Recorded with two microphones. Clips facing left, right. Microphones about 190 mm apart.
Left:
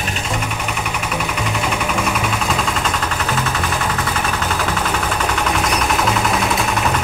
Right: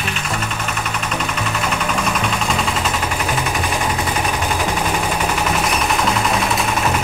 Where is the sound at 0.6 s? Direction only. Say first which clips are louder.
Left 1 dB; 10° left (ahead or behind).